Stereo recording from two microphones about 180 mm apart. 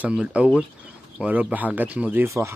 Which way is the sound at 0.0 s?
5° right (ahead or behind).